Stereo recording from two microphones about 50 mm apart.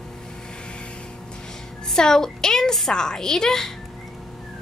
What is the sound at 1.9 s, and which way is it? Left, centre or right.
A woman's voice, centre.